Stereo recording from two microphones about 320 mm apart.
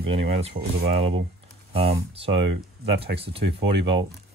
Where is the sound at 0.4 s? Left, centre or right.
Centre.